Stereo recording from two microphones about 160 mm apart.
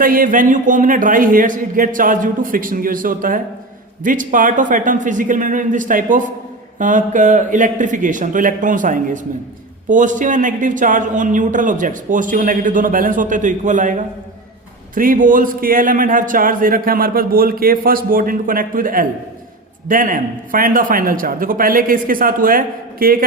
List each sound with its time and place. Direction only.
0.0 s a man's voice: 60° right (ahead or behind)